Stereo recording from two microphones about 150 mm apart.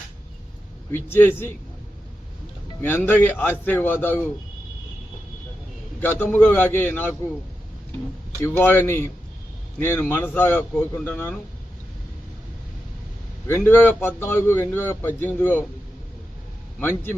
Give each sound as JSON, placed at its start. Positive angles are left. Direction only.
{"t": 0.9, "sound": "a man's voice", "side_deg": 15}
{"t": 2.8, "sound": "a man's voice", "side_deg": 15}
{"t": 6.0, "sound": "a man's voice", "side_deg": 10}
{"t": 8.4, "sound": "a man's voice", "side_deg": 15}
{"t": 13.5, "sound": "a man's voice", "side_deg": 15}
{"t": 16.8, "sound": "a man's voice", "side_deg": 15}